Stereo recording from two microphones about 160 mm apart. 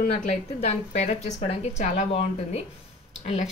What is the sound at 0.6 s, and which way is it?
A woman's voice, 45° left (ahead or behind).